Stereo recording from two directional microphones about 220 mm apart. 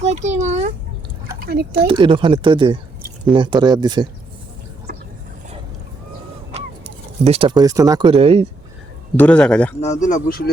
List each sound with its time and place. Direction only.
0.0 s a child's voice: 30° right (ahead or behind)
1.3 s a sound: 45° right (ahead or behind)
1.9 s speech: 25° right (ahead or behind)
7.3 s speech: 25° right (ahead or behind)
9.1 s speech: 5° left (ahead or behind)
9.8 s speech: 35° left (ahead or behind)